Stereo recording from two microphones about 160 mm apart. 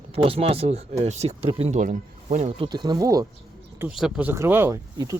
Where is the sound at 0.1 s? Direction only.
35° right (ahead or behind).